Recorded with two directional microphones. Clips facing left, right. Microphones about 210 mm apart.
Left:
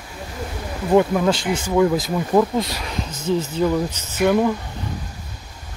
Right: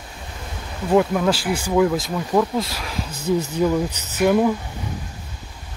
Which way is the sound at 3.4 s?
10° right (ahead or behind).